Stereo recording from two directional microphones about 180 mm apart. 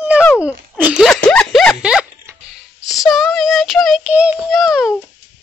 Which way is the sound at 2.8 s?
Centre (ahead or behind).